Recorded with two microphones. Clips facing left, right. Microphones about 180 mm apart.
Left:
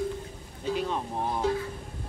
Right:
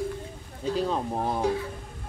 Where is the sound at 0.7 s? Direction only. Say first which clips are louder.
Right 4 dB; 40° right (ahead or behind).